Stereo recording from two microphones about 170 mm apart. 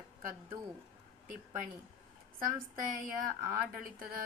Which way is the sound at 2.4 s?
55° right (ahead or behind).